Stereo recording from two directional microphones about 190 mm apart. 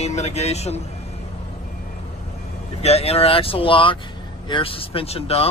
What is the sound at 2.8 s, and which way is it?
Speech, 35° left (ahead or behind).